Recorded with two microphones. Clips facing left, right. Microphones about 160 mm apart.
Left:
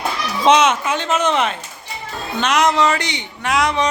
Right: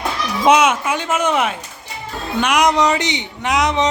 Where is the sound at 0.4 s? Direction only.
10° right (ahead or behind).